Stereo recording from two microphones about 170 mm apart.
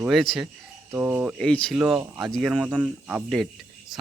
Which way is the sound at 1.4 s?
5° left (ahead or behind).